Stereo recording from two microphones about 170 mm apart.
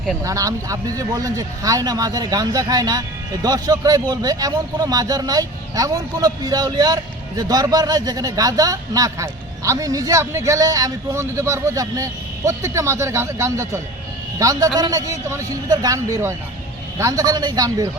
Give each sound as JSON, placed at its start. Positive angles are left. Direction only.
{"t": 0.2, "sound": "speech", "side_deg": -20}